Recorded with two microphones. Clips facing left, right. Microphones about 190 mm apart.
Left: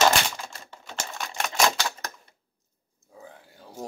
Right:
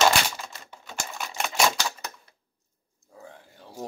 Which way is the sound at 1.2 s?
5° right (ahead or behind).